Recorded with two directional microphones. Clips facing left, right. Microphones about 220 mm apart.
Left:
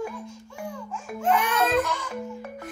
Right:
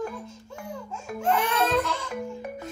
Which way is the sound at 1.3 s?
25° right (ahead or behind).